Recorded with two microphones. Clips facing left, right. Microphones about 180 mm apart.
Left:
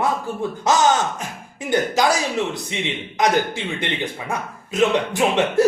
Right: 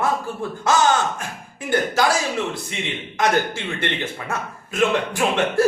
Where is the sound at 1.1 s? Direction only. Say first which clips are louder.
Left 1 dB; 20° left (ahead or behind).